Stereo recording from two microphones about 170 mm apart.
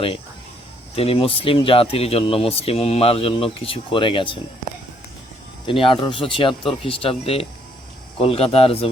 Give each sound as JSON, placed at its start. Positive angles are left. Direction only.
{"t": 0.9, "sound": "speech", "side_deg": 35}
{"t": 5.6, "sound": "speech", "side_deg": 30}